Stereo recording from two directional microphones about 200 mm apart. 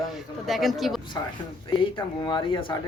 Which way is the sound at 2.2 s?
25° left (ahead or behind).